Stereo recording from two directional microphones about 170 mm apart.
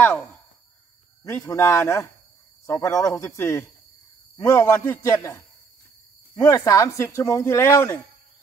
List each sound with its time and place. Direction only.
0.0 s speech: 10° left (ahead or behind)
6.4 s speech: 20° left (ahead or behind)